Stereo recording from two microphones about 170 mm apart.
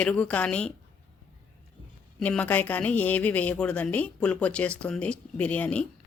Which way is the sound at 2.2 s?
10° left (ahead or behind).